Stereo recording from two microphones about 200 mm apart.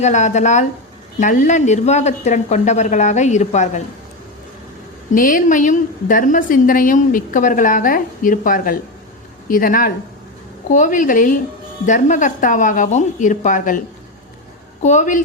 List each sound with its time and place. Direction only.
0.0 s speech: 35° left (ahead or behind)
5.1 s a woman's voice: 45° left (ahead or behind)